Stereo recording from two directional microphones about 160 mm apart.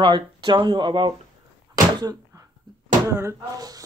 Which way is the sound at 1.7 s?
20° right (ahead or behind).